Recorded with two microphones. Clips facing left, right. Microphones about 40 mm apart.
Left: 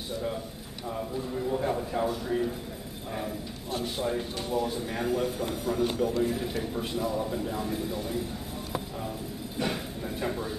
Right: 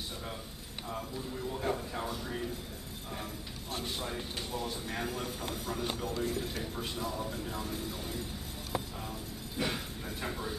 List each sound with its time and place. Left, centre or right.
0.8 s a man's voice: centre
4.0 s a man's voice: centre
9.6 s a sound: centre